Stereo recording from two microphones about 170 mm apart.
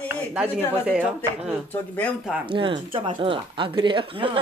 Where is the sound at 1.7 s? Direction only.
10° left (ahead or behind).